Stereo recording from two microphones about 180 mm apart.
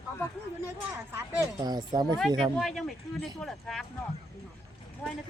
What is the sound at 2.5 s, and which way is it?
Speech, centre (ahead or behind).